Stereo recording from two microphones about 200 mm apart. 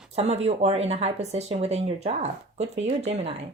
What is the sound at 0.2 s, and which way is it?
Speech, 30° right (ahead or behind).